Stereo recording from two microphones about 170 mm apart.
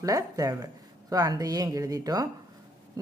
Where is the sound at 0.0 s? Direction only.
20° right (ahead or behind).